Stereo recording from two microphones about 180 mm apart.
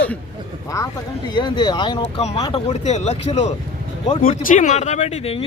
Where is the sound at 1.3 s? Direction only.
25° left (ahead or behind).